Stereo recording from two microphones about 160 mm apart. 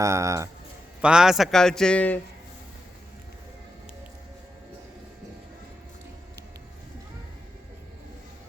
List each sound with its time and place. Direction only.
0.0 s speech: 20° right (ahead or behind)
1.0 s a man's voice: 5° right (ahead or behind)